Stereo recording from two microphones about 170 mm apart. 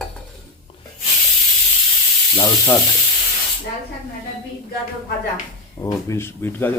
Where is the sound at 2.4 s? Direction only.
10° left (ahead or behind).